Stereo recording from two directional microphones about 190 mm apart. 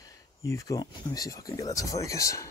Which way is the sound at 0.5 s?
15° left (ahead or behind).